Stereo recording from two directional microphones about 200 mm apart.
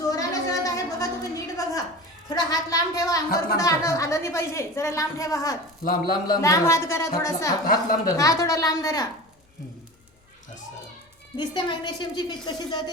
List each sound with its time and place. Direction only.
0.0 s a sound: 15° left (ahead or behind)
2.3 s a woman's voice: 15° left (ahead or behind)
5.8 s speech: 45° left (ahead or behind)
6.4 s a woman's voice: 15° left (ahead or behind)
7.7 s speech: 45° left (ahead or behind)
8.1 s a woman's voice: 15° left (ahead or behind)
11.3 s a woman's voice: 20° left (ahead or behind)